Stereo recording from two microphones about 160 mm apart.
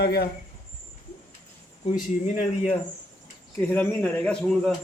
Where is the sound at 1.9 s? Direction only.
50° left (ahead or behind).